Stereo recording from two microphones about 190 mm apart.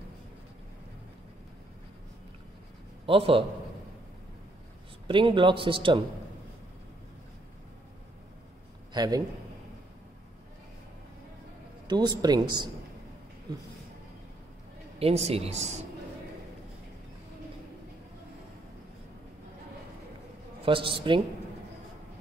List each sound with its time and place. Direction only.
3.1 s a man's voice: 30° right (ahead or behind)
5.0 s a man's voice: 25° right (ahead or behind)
8.9 s a man's voice: 20° right (ahead or behind)
11.9 s a man's voice: 20° right (ahead or behind)
15.0 s speech: 30° right (ahead or behind)
20.6 s a man's voice: 25° right (ahead or behind)